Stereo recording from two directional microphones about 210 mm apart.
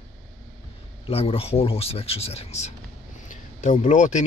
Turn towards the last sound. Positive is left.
turn(degrees=35)  # may be behind; listen again after turning